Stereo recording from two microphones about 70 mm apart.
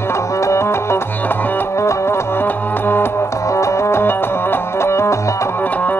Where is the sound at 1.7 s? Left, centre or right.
Left.